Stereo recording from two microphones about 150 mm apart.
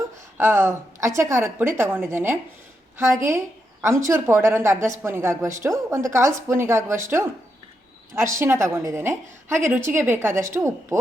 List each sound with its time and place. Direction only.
0.3 s a woman's voice: 15° right (ahead or behind)